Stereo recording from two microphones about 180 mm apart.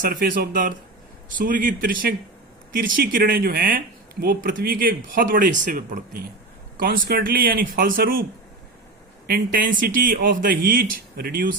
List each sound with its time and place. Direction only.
0.0 s speech: 50° right (ahead or behind)